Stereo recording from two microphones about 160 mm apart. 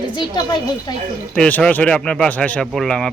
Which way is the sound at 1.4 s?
10° left (ahead or behind).